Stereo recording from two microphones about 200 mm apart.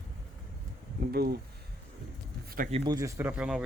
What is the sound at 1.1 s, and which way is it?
Speech, 50° right (ahead or behind).